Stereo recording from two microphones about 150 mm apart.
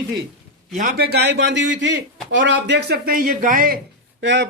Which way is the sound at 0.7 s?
65° right (ahead or behind).